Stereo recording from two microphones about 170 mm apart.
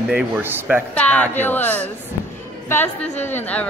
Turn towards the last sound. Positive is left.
turn(degrees=10)  # may be behind; listen again after turning